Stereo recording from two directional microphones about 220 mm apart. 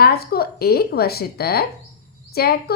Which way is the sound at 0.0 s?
45° left (ahead or behind).